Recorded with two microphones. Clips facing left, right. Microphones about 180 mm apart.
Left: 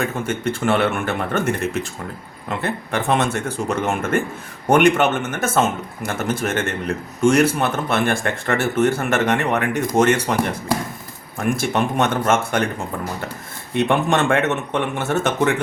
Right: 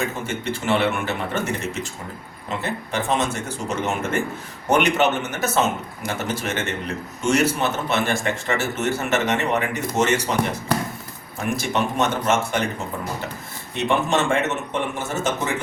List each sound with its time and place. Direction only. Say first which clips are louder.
0.0 s a man's voice: left 4 dB; 55° left (ahead or behind)
11.3 s a man's voice: left 3 dB; 50° left (ahead or behind)
13.7 s speech: left 3 dB; 55° left (ahead or behind)